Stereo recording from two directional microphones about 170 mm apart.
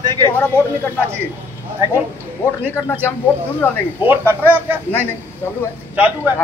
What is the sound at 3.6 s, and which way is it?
Speech, 15° left (ahead or behind).